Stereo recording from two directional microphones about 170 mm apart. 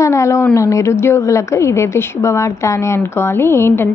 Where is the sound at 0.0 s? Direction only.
15° left (ahead or behind).